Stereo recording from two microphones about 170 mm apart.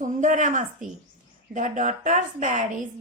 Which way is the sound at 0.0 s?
50° right (ahead or behind).